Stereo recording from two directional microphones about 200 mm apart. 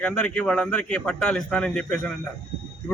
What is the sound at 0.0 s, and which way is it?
Speech, 5° left (ahead or behind).